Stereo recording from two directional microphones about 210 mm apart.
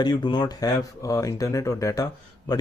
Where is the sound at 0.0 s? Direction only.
20° left (ahead or behind).